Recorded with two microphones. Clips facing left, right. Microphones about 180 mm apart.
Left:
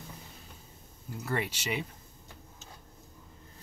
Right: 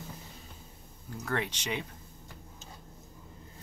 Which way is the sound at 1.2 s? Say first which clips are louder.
Even; 10° left (ahead or behind).